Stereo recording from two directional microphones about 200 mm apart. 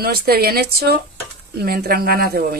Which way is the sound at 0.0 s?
50° right (ahead or behind).